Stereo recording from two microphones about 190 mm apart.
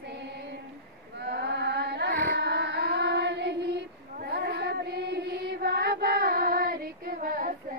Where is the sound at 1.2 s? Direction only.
65° right (ahead or behind).